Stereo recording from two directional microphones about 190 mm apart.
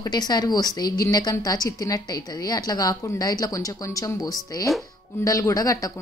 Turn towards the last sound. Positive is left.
turn(degrees=20)  # may be behind; listen again after turning